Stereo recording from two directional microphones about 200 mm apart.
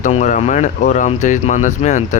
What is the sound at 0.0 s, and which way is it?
Speech, 40° left (ahead or behind).